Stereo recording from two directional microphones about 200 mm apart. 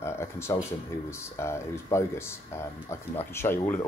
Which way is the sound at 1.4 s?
15° left (ahead or behind).